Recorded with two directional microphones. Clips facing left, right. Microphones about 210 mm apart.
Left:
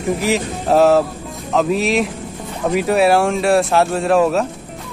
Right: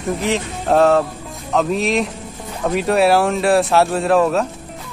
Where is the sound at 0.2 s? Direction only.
5° left (ahead or behind).